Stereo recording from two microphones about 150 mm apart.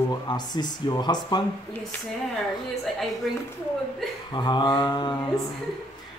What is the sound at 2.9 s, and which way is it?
Speech, centre (ahead or behind).